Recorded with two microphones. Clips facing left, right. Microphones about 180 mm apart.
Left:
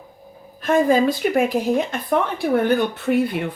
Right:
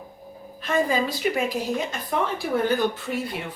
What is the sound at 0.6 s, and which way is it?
Speech, 50° left (ahead or behind).